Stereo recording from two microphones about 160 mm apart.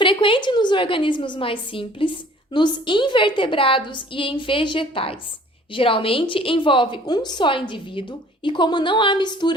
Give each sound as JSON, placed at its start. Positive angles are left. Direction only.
{"t": 0.0, "sound": "a woman's voice", "side_deg": 30}